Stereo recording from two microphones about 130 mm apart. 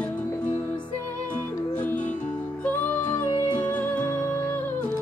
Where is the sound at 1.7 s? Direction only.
10° left (ahead or behind).